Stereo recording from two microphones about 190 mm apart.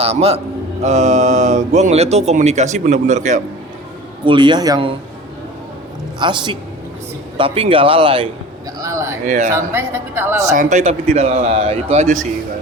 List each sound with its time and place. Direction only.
0.0 s speech: 30° right (ahead or behind)
4.3 s speech: 25° right (ahead or behind)
6.1 s speech: 25° right (ahead or behind)
8.8 s a sound: 15° right (ahead or behind)
9.2 s speech: 40° right (ahead or behind)
9.7 s speech: 10° right (ahead or behind)
10.5 s speech: 40° right (ahead or behind)